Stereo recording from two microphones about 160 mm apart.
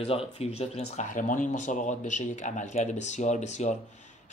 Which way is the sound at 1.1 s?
55° left (ahead or behind).